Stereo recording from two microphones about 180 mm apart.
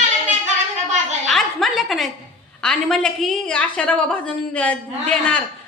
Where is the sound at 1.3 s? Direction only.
Centre (ahead or behind).